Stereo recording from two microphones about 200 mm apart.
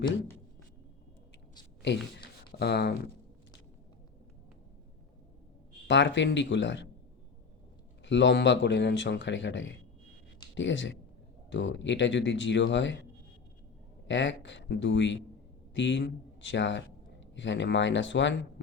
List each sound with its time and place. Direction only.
1.8 s speech: 60° left (ahead or behind)
5.9 s speech: 65° left (ahead or behind)
8.0 s speech: 65° left (ahead or behind)
14.1 s a man's voice: 65° left (ahead or behind)